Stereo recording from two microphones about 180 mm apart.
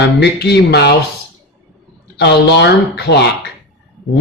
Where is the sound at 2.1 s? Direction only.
70° left (ahead or behind).